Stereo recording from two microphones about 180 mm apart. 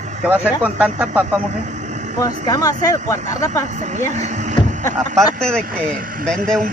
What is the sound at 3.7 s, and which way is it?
Speech, 40° right (ahead or behind).